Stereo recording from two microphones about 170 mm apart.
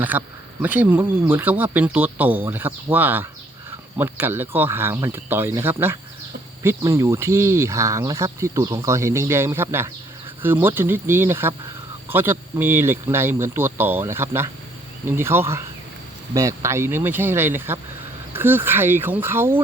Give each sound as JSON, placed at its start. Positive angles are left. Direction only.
{"t": 0.0, "sound": "speech", "side_deg": -10}